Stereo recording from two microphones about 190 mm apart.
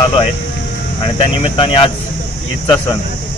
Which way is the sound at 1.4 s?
25° left (ahead or behind).